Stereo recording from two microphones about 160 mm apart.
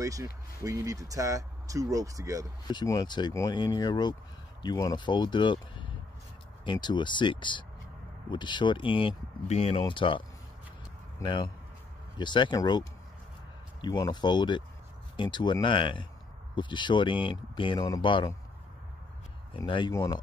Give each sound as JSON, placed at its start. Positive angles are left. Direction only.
{"t": 0.0, "sound": "speech", "side_deg": -20}
{"t": 2.7, "sound": "speech", "side_deg": 25}
{"t": 9.8, "sound": "speech", "side_deg": 30}
{"t": 11.2, "sound": "speech", "side_deg": 30}
{"t": 19.5, "sound": "speech", "side_deg": 30}
{"t": 19.9, "sound": "speech", "side_deg": 20}